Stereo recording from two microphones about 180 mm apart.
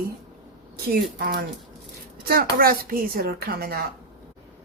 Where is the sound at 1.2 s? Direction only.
60° right (ahead or behind).